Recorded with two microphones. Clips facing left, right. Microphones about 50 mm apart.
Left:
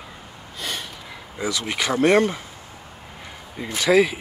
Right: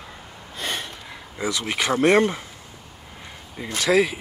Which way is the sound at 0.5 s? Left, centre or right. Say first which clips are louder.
Right 2 dB; right.